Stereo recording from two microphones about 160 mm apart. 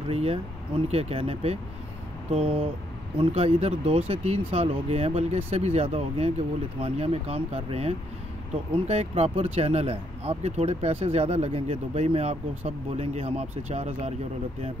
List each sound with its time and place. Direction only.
0.1 s speech: 40° right (ahead or behind)